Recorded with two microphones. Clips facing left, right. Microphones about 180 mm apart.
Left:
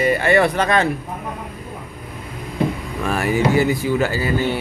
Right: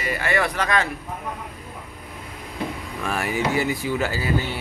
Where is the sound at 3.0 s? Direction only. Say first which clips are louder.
Left 6 dB; 40° left (ahead or behind).